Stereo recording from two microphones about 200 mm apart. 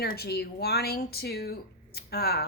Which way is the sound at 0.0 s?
50° left (ahead or behind).